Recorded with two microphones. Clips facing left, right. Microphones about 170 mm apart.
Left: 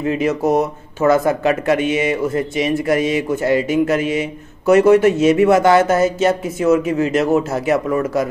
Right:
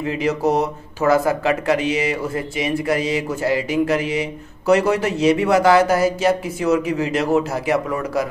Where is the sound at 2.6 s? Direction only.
25° right (ahead or behind).